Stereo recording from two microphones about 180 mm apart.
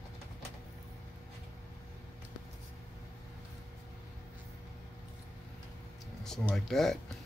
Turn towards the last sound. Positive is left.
turn(degrees=0)  # may be behind; listen again after turning